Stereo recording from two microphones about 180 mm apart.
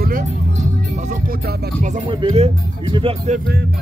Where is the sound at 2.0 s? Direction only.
35° right (ahead or behind).